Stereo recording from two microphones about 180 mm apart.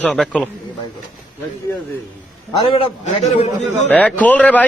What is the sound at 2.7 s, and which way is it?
Speech, 30° left (ahead or behind).